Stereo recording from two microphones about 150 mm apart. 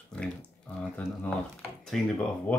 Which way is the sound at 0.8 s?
5° left (ahead or behind).